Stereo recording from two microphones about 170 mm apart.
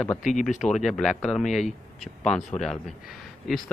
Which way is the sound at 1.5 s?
45° left (ahead or behind).